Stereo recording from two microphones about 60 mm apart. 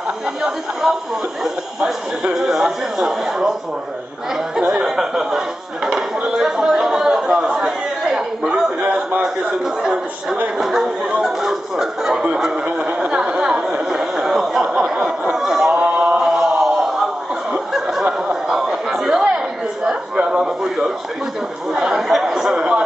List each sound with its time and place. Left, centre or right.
0.8 s speech: centre
4.6 s a sound: centre
5.9 s chatter: centre
10.6 s chatter: centre
11.2 s music: centre
12.7 s a sound: centre
15.7 s chant: centre
17.7 s snicker: centre
18.3 s a sound: centre
21.7 s chatter: centre